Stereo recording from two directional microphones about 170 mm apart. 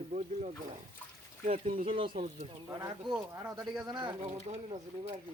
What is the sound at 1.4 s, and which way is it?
Speech, 55° right (ahead or behind).